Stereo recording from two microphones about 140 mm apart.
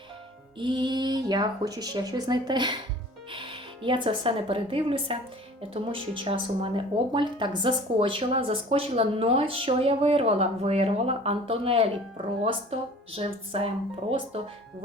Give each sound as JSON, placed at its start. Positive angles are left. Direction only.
{"t": 0.6, "sound": "speech", "side_deg": -30}